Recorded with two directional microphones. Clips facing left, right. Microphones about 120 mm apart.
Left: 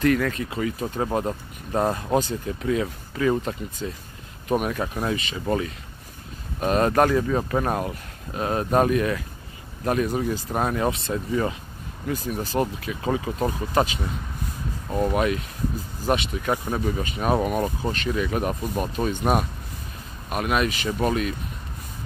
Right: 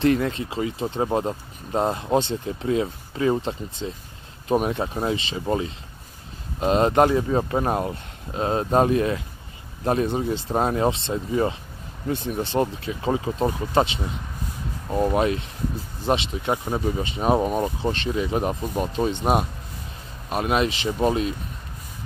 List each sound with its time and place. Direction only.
0.0 s speech: 25° right (ahead or behind)
6.6 s speech: 25° right (ahead or behind)
20.2 s speech: 30° right (ahead or behind)